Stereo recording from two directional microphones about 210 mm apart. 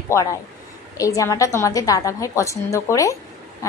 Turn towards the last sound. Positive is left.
turn(degrees=15)  # may be behind; listen again after turning